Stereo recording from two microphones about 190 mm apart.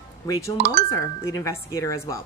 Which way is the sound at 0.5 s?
55° right (ahead or behind).